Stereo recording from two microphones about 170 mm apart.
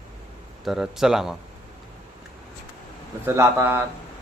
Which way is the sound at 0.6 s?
Centre (ahead or behind).